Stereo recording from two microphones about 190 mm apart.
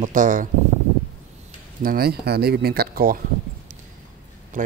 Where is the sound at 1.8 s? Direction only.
50° right (ahead or behind).